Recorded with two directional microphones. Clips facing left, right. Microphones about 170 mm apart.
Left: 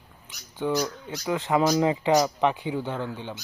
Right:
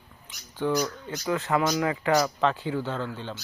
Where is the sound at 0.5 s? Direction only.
10° left (ahead or behind).